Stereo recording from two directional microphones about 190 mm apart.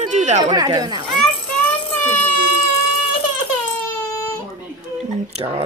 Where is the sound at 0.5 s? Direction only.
20° right (ahead or behind).